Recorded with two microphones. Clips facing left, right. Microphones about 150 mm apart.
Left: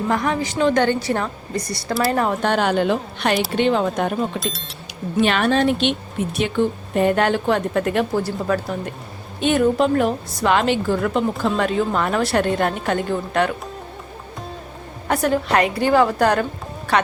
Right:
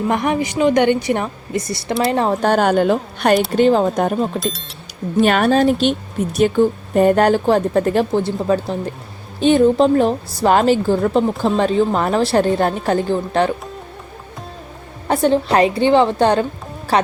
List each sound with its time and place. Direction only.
0.1 s a woman's voice: 20° right (ahead or behind)
2.4 s speech: 40° right (ahead or behind)
4.4 s speech: centre (ahead or behind)
5.1 s speech: 45° right (ahead or behind)
15.0 s a woman's voice: 30° right (ahead or behind)